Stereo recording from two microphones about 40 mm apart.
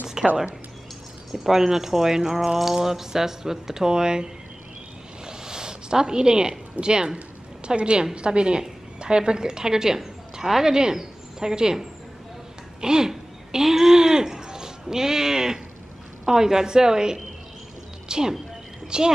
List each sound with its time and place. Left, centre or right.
0.2 s speech: centre
5.2 s a sound: centre
7.6 s a woman's voice: right
18.0 s music: centre
18.9 s speech: centre